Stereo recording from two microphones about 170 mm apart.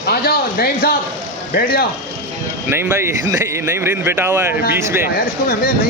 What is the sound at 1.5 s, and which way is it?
Speech, 65° left (ahead or behind).